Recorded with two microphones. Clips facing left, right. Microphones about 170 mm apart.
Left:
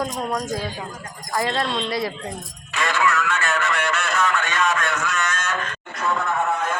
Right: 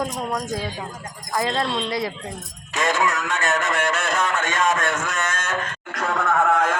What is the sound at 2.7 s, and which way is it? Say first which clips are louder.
A man's voice: even; 45° right (ahead or behind).